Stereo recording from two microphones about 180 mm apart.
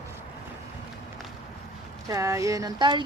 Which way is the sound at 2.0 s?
15° right (ahead or behind).